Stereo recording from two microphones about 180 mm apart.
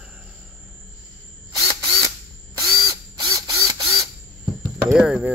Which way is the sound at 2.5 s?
20° right (ahead or behind).